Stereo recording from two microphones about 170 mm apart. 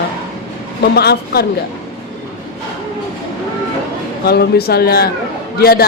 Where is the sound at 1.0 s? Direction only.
70° left (ahead or behind).